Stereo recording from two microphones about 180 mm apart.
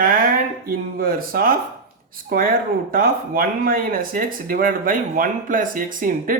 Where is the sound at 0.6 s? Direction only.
55° right (ahead or behind).